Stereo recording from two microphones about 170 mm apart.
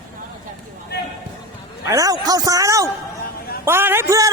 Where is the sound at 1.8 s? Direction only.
20° right (ahead or behind).